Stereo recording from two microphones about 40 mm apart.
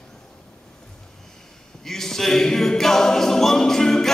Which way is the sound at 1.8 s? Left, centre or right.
Centre.